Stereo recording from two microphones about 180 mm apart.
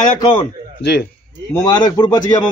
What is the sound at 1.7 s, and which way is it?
Speech, 25° left (ahead or behind).